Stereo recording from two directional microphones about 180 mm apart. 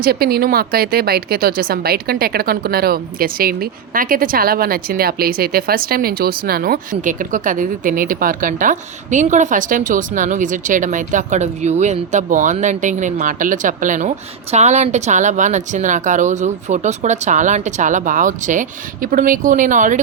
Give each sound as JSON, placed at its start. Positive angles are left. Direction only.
{"t": 0.0, "sound": "a woman's voice", "side_deg": -60}